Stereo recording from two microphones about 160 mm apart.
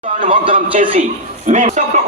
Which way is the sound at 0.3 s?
35° right (ahead or behind).